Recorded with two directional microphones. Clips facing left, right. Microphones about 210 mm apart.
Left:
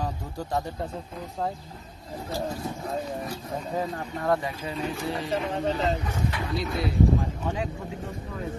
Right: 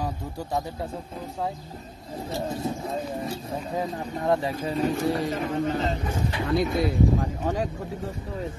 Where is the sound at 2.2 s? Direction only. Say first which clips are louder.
Right 2 dB; 20° right (ahead or behind).